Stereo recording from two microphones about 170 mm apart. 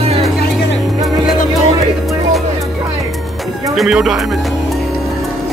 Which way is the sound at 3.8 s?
Centre (ahead or behind).